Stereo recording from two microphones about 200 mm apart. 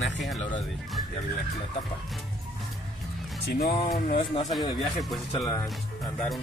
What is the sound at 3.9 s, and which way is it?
Speech, 40° left (ahead or behind).